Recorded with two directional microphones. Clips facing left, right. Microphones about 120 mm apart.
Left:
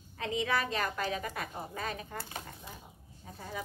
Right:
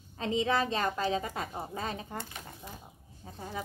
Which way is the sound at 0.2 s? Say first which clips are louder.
Right 3 dB; 25° right (ahead or behind).